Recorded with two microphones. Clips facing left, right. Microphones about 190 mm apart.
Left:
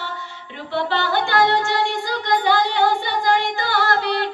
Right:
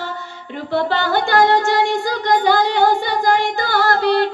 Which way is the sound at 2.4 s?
45° right (ahead or behind).